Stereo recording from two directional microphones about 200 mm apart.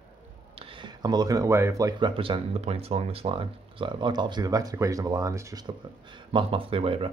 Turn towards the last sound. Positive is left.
turn(degrees=-25)  # may be behind; listen again after turning